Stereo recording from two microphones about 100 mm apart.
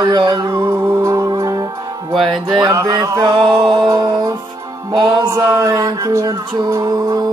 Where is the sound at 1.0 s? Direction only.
30° right (ahead or behind).